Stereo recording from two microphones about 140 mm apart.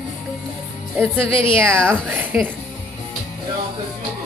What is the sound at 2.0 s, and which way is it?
Speech, 15° right (ahead or behind).